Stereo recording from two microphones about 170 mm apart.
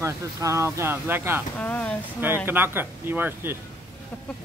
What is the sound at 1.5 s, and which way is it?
Speech, 10° left (ahead or behind).